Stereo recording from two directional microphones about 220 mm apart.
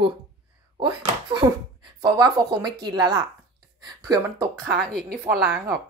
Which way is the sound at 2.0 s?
20° right (ahead or behind).